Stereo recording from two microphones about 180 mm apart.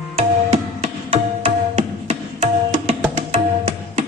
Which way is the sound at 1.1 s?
40° right (ahead or behind).